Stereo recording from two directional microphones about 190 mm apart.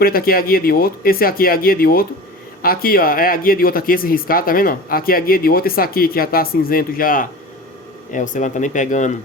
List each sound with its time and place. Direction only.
0.0 s speech: 50° left (ahead or behind)